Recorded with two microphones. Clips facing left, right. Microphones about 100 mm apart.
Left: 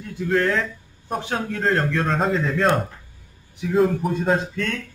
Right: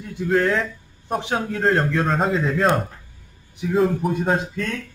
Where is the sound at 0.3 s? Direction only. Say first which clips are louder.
Right 1 dB; 5° right (ahead or behind).